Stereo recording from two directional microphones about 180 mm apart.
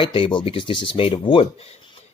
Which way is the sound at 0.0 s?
30° left (ahead or behind).